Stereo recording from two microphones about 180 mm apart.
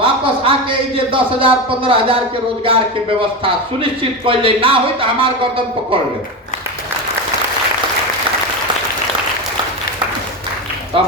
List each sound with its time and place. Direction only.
0.0 s a man's voice: 30° right (ahead or behind)